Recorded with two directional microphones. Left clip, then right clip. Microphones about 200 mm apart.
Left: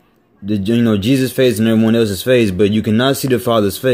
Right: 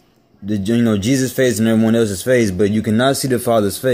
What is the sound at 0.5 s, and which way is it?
Speech, 20° left (ahead or behind).